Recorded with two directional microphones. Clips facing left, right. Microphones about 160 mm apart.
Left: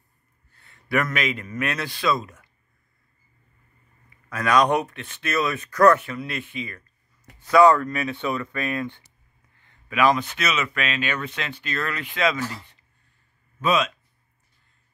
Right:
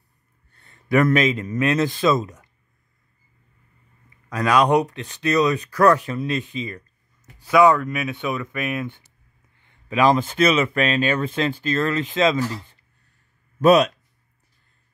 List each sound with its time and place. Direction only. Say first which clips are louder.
0.6 s speech: right 6 dB; 25° right (ahead or behind)
4.3 s speech: right 2 dB; 15° right (ahead or behind)
7.6 s speech: even; 5° right (ahead or behind)
9.6 s a sound: right 6 dB; 20° right (ahead or behind)
9.9 s speech: right 3 dB; 30° right (ahead or behind)
13.6 s speech: right 8 dB; 40° right (ahead or behind)